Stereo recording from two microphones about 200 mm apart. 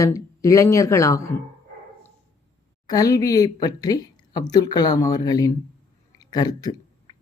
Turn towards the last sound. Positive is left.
turn(degrees=20)  # may be behind; listen again after turning